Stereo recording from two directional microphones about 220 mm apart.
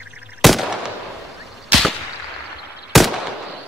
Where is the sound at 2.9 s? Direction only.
Centre (ahead or behind).